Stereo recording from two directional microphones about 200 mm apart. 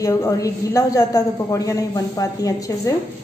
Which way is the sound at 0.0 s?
15° left (ahead or behind).